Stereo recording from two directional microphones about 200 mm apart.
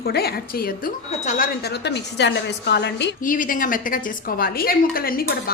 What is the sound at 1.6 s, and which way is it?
A woman's voice, 55° left (ahead or behind).